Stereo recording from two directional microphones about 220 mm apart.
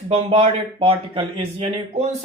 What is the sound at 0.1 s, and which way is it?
Speech, 25° right (ahead or behind).